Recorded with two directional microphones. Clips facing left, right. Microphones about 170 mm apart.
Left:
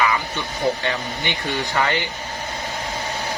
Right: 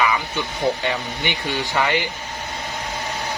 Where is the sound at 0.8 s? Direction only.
15° right (ahead or behind).